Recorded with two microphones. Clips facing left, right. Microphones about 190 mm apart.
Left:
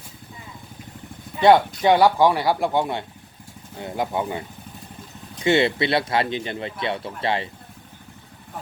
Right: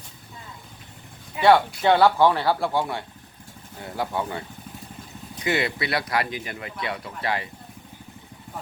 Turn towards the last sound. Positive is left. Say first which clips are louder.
# left 3 dB
turn(degrees=25)  # may be behind; listen again after turning